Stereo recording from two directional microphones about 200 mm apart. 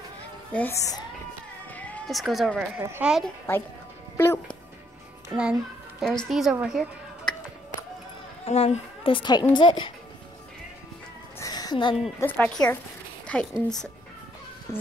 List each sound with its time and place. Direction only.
0.5 s speech: 10° left (ahead or behind)
1.7 s sheep: 5° left (ahead or behind)
2.8 s a woman's voice: 10° right (ahead or behind)
5.3 s a child's voice: 5° right (ahead or behind)
8.5 s a woman's voice: 30° left (ahead or behind)
11.3 s music: 15° left (ahead or behind)
12.2 s a woman's voice: 10° left (ahead or behind)